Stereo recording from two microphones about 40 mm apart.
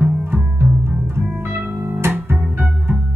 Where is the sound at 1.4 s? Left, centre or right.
Right.